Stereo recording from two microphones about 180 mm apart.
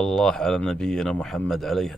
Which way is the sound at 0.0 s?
5° left (ahead or behind).